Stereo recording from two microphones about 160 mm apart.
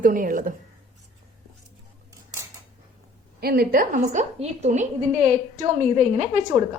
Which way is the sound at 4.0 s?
40° right (ahead or behind).